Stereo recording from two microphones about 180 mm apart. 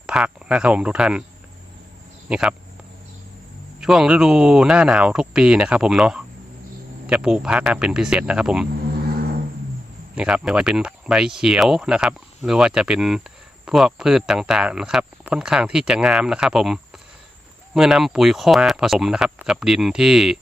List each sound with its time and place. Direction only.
0.0 s speech: 5° right (ahead or behind)
2.3 s speech: 5° right (ahead or behind)
3.8 s speech: centre (ahead or behind)
10.2 s speech: 5° right (ahead or behind)